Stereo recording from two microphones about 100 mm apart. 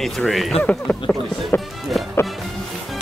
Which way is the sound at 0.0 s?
Centre (ahead or behind).